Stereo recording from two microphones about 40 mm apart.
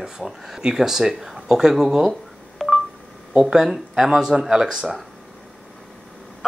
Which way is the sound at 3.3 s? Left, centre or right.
Centre.